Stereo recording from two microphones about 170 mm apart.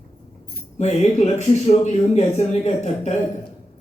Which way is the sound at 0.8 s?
40° left (ahead or behind).